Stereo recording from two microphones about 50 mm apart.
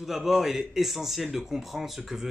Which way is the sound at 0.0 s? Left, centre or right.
Centre.